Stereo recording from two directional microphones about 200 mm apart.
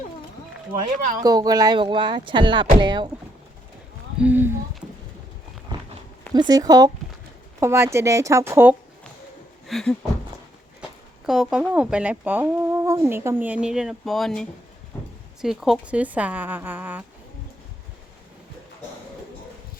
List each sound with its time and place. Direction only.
1.2 s speech: 20° right (ahead or behind)
4.2 s speech: 10° right (ahead or behind)
6.3 s speech: 20° right (ahead or behind)
9.6 s a sound: centre (ahead or behind)
11.3 s speech: centre (ahead or behind)